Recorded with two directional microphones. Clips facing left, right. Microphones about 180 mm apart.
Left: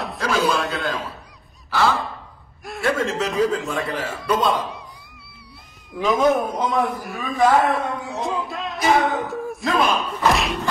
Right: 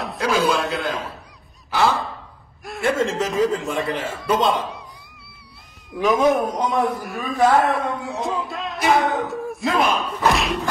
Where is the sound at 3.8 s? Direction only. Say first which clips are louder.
Right 1 dB; 25° right (ahead or behind).